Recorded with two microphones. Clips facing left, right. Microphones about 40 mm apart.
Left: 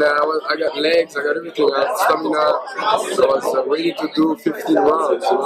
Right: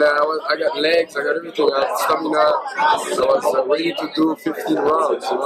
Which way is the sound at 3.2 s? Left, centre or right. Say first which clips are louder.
Left 3 dB; right.